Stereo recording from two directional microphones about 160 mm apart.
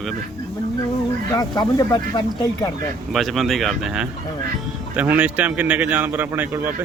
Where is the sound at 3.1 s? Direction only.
Centre (ahead or behind).